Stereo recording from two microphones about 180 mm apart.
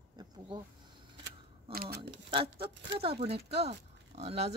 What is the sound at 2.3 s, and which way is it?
Speech, 30° right (ahead or behind).